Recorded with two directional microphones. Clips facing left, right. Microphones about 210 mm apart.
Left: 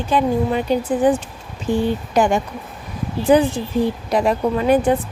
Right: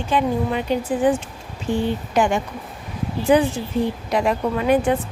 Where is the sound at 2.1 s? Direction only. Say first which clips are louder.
Left 2 dB; 40° left (ahead or behind).